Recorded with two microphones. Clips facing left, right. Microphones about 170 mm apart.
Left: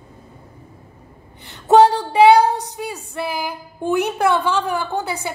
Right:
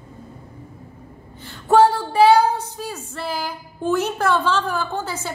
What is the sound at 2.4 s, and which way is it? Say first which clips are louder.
A woman's voice: left 2 dB; 15° left (ahead or behind).